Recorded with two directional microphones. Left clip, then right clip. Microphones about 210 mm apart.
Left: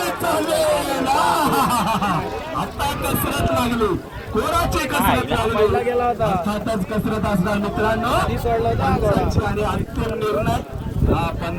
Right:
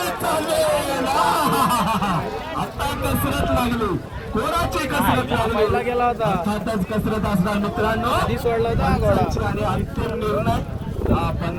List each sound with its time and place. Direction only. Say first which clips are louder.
0.6 s a sound: left 1 dB; 10° right (ahead or behind)
3.1 s speech: left 1 dB; 55° left (ahead or behind)
5.5 s speech: left 2 dB; 45° right (ahead or behind)
6.5 s speech: left 1 dB; 10° left (ahead or behind)
7.1 s speech: left 2 dB; 5° right (ahead or behind)
8.3 s speech: left 1 dB; 35° right (ahead or behind)
9.4 s speech: left 1 dB; 50° left (ahead or behind)